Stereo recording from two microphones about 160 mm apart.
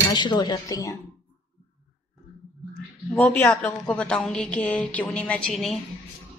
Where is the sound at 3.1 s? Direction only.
10° left (ahead or behind).